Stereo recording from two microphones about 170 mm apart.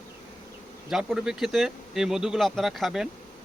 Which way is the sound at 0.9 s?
Centre (ahead or behind).